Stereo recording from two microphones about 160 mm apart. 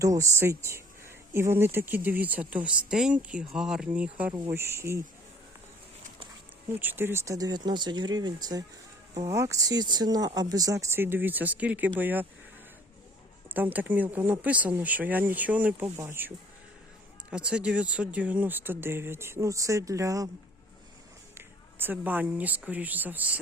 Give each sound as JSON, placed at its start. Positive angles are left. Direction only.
{"t": 0.0, "sound": "speech", "side_deg": -20}
{"t": 6.7, "sound": "speech", "side_deg": -10}
{"t": 13.5, "sound": "speech", "side_deg": -10}
{"t": 17.3, "sound": "speech", "side_deg": -5}
{"t": 21.3, "sound": "speech", "side_deg": -10}